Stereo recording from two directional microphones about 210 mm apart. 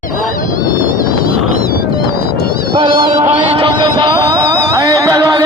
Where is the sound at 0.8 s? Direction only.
40° left (ahead or behind).